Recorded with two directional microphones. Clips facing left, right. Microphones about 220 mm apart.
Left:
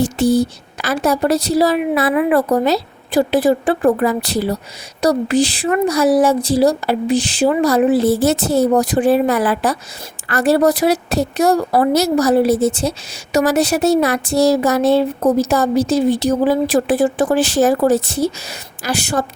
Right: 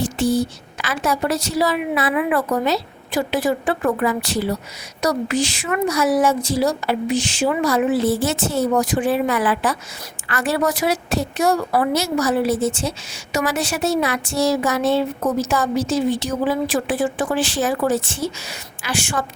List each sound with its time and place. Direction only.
0.0 s speech: 40° left (ahead or behind)